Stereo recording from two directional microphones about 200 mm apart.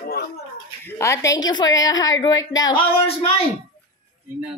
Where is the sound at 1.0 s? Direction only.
15° left (ahead or behind).